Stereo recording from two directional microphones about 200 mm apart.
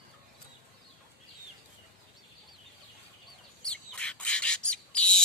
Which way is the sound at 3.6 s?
5° left (ahead or behind).